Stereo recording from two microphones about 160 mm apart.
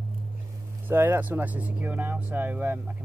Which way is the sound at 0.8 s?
15° right (ahead or behind).